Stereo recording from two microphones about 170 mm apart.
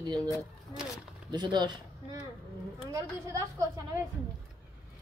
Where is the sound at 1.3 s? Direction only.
25° right (ahead or behind).